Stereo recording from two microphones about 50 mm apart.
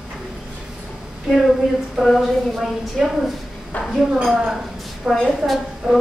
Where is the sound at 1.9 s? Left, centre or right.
Centre.